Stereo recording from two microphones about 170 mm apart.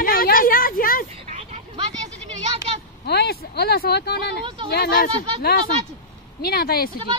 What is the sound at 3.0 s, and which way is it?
Speech, 75° left (ahead or behind).